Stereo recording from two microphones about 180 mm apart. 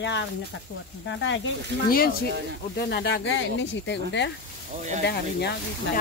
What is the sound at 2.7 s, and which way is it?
Speech, 65° left (ahead or behind).